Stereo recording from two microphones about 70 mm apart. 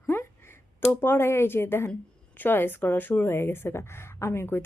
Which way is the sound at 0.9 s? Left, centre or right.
Left.